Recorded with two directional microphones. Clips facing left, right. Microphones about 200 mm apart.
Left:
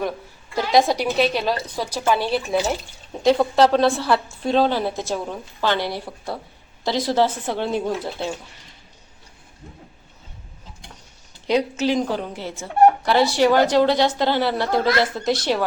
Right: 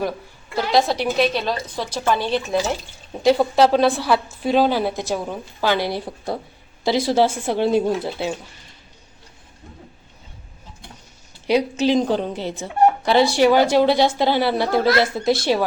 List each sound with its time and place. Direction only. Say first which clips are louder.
0.5 s a woman's voice: left 1 dB; 15° left (ahead or behind)
3.2 s a woman's voice: right 1 dB; 5° right (ahead or behind)
11.4 s a woman's voice: right 2 dB; 15° right (ahead or behind)